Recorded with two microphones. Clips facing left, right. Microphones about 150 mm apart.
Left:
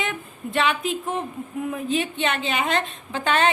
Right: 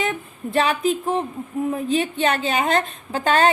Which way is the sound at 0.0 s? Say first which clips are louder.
Right 4 dB; 35° right (ahead or behind).